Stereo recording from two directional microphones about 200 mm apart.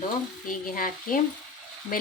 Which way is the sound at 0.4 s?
45° left (ahead or behind).